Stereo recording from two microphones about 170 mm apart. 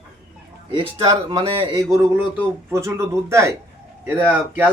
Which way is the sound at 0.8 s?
30° right (ahead or behind).